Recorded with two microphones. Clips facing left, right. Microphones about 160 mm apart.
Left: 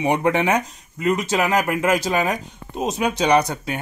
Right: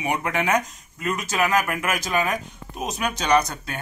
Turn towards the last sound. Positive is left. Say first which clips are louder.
# left 3 dB
turn(degrees=30)  # may be behind; listen again after turning